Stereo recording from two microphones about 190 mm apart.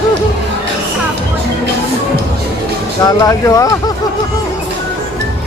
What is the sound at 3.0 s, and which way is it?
Speech, 15° left (ahead or behind).